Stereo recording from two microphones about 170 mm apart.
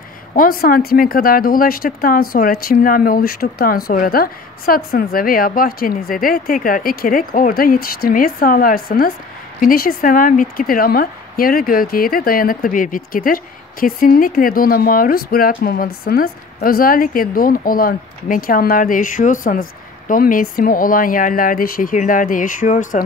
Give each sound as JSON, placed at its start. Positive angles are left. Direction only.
{"t": 0.3, "sound": "a woman's voice", "side_deg": 55}